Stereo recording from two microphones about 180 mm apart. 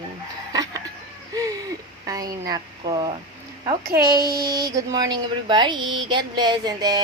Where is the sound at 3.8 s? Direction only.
55° right (ahead or behind).